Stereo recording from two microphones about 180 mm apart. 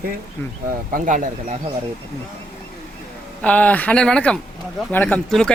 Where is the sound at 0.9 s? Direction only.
45° right (ahead or behind).